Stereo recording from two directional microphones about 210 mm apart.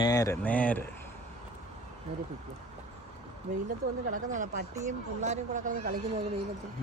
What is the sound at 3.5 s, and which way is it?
Speech, 45° right (ahead or behind).